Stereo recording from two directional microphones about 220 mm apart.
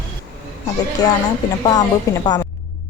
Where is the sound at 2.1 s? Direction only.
15° left (ahead or behind).